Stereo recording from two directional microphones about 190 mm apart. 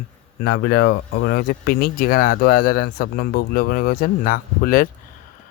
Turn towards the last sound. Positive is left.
turn(degrees=50)  # may be behind; listen again after turning